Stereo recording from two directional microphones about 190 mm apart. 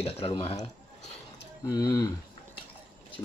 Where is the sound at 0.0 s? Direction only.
30° left (ahead or behind).